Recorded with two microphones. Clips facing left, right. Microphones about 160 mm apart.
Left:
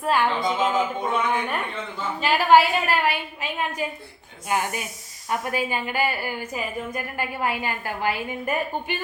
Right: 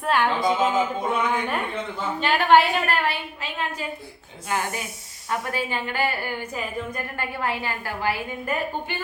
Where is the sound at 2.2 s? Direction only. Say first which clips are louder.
Left 1 dB; 5° left (ahead or behind).